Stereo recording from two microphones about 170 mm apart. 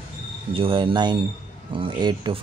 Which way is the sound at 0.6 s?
30° right (ahead or behind).